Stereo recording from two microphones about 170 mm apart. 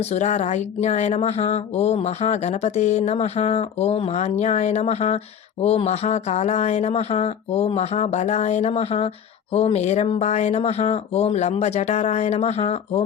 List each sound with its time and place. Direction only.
0.1 s speech: 40° left (ahead or behind)